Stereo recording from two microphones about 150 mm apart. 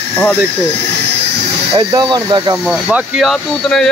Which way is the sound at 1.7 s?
25° right (ahead or behind).